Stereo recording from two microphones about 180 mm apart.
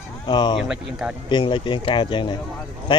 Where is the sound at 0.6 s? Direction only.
5° right (ahead or behind).